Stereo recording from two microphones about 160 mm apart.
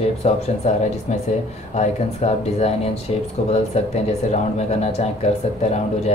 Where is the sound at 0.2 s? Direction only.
40° left (ahead or behind).